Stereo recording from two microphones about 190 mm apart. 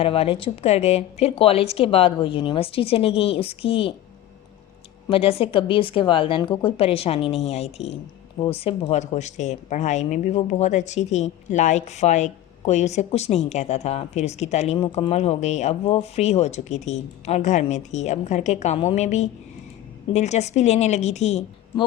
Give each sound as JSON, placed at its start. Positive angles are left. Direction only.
{"t": 0.0, "sound": "a woman's voice", "side_deg": 30}
{"t": 5.0, "sound": "a woman's voice", "side_deg": 30}